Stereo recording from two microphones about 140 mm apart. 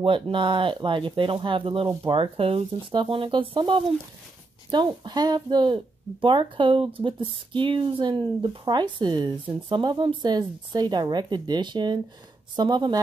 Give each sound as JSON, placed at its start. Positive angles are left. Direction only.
{"t": 0.0, "sound": "speech", "side_deg": -35}